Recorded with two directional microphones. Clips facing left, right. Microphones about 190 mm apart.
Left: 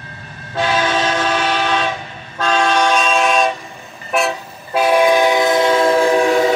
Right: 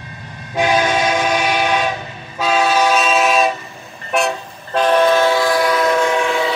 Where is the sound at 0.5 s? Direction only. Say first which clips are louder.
Right 2 dB; 15° right (ahead or behind).